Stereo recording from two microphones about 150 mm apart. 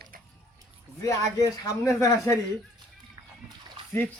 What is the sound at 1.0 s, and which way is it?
Speech, 20° left (ahead or behind).